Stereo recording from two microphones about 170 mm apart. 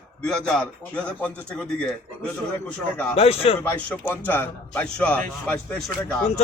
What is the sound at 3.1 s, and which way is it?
Speech, 35° left (ahead or behind).